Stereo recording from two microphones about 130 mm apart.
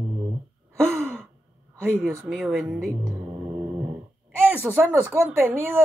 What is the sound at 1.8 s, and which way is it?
Speech, 20° right (ahead or behind).